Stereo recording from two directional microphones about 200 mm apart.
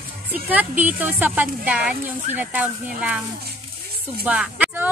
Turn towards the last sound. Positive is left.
turn(degrees=-10)  # may be behind; listen again after turning